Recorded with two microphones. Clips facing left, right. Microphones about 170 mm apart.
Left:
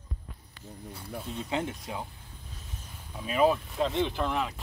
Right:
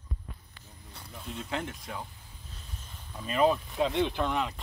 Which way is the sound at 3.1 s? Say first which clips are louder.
Left 1 dB; 5° left (ahead or behind).